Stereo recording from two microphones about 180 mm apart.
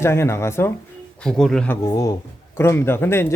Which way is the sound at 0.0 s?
15° left (ahead or behind).